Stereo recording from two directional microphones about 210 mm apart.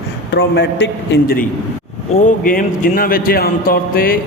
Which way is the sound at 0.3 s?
55° left (ahead or behind).